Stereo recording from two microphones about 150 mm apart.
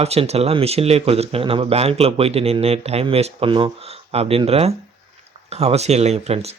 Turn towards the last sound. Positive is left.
turn(degrees=-45)  # may be behind; listen again after turning